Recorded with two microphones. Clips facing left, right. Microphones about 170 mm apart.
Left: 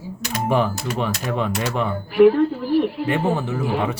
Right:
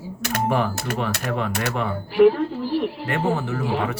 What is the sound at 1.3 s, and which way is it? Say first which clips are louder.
Speech: left 3 dB; 20° left (ahead or behind).